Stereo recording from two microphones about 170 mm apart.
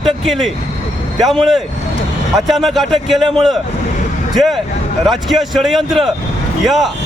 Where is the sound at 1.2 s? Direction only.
Centre (ahead or behind).